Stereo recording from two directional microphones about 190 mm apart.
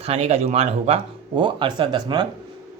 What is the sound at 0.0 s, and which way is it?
Speech, 30° right (ahead or behind).